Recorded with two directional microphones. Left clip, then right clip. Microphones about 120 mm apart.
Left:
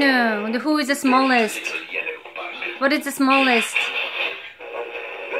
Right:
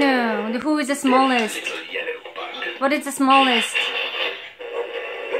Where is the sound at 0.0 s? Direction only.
25° left (ahead or behind).